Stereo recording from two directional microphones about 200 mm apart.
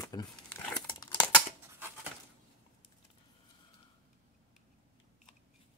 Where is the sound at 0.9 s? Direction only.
20° left (ahead or behind).